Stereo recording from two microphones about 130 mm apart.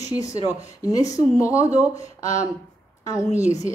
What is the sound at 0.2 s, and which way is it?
A woman's voice, 25° left (ahead or behind).